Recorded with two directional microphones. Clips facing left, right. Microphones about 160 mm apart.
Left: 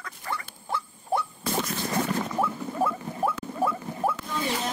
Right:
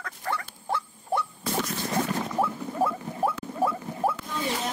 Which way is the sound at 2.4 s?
35° right (ahead or behind).